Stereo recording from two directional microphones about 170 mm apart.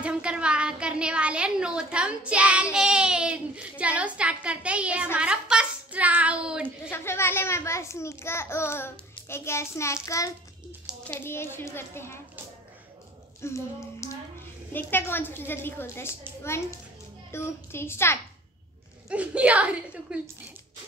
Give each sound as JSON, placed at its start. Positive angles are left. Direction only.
{"t": 0.0, "sound": "a woman's voice", "side_deg": -5}
{"t": 6.9, "sound": "a child's voice", "side_deg": 15}
{"t": 13.4, "sound": "a child's voice", "side_deg": 15}
{"t": 17.3, "sound": "a child's voice", "side_deg": 15}
{"t": 19.0, "sound": "a woman's voice", "side_deg": -5}